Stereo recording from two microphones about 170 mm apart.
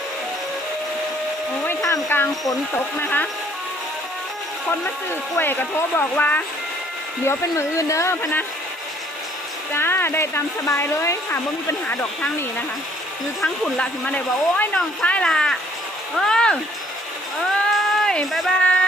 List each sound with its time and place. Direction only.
1.9 s speech: 15° left (ahead or behind)
5.4 s speech: 10° left (ahead or behind)
9.8 s speech: 15° left (ahead or behind)
17.7 s a sound: centre (ahead or behind)